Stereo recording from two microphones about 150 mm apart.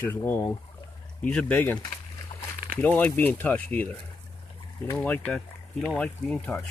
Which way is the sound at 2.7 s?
10° left (ahead or behind).